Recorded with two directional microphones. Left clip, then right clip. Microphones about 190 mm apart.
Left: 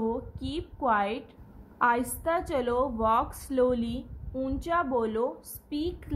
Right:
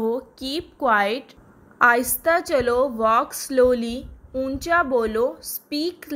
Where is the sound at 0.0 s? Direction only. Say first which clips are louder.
Right 7 dB; 25° right (ahead or behind).